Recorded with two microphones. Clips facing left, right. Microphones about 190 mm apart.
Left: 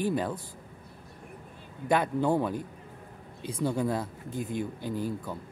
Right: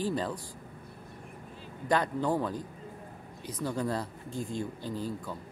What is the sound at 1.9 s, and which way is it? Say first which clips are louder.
Speech: left 2 dB; 10° left (ahead or behind).